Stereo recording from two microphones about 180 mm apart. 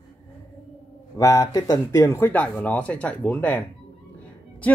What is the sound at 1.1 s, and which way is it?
Speech, 20° left (ahead or behind).